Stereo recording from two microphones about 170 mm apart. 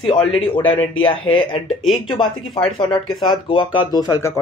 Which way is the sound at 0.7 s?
30° left (ahead or behind).